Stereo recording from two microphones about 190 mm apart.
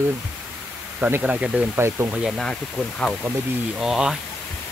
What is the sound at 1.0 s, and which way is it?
Speech, 5° right (ahead or behind).